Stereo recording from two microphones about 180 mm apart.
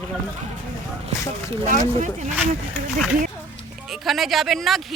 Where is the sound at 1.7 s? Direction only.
45° right (ahead or behind).